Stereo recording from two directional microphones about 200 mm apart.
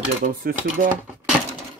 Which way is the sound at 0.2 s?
40° right (ahead or behind).